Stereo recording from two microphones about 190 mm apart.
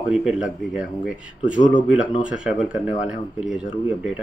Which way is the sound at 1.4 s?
40° left (ahead or behind).